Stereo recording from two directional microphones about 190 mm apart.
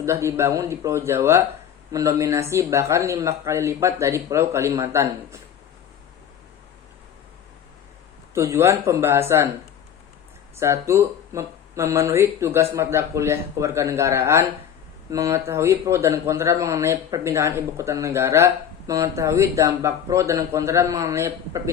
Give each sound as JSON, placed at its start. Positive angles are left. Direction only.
{"t": 0.0, "sound": "a man's voice", "side_deg": -15}
{"t": 8.3, "sound": "a man's voice", "side_deg": -15}
{"t": 10.6, "sound": "a man's voice", "side_deg": -15}